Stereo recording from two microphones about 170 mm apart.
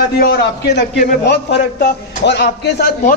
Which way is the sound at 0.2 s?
70° left (ahead or behind).